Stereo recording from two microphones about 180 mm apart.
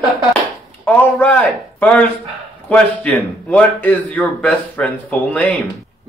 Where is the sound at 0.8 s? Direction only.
10° left (ahead or behind).